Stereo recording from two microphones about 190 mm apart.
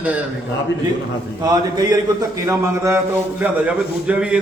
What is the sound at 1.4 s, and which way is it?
A man's voice, 20° right (ahead or behind).